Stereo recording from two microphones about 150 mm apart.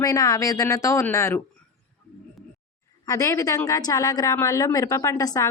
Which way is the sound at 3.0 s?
20° left (ahead or behind).